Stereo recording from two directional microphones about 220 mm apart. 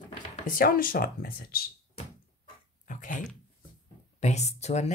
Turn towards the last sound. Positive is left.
turn(degrees=30)  # may be behind; listen again after turning